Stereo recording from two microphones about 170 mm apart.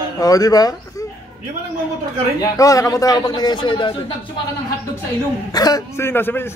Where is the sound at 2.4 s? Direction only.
20° left (ahead or behind).